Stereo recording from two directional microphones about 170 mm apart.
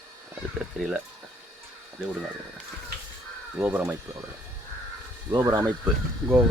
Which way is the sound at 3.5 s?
10° right (ahead or behind).